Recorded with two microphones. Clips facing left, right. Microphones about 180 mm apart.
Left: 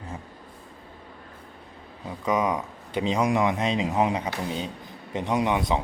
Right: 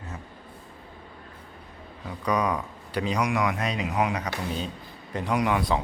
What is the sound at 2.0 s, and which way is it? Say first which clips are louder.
Speech: left 1 dB; 20° left (ahead or behind).